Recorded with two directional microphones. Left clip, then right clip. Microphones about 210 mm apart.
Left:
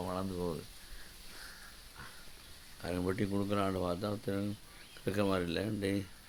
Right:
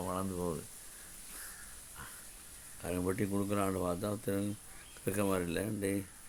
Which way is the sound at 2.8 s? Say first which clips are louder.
Even; centre (ahead or behind).